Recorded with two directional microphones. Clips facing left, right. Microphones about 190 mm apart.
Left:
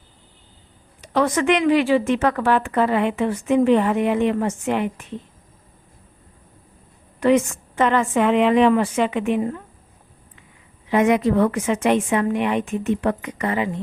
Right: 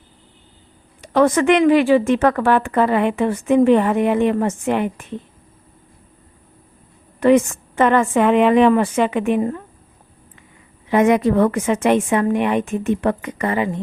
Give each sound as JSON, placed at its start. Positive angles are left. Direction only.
{"t": 1.0, "sound": "a woman's voice", "side_deg": -50}
{"t": 7.2, "sound": "a woman's voice", "side_deg": -50}
{"t": 10.9, "sound": "a woman's voice", "side_deg": -50}